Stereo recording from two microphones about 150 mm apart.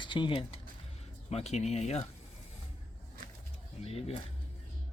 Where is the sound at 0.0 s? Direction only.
30° left (ahead or behind).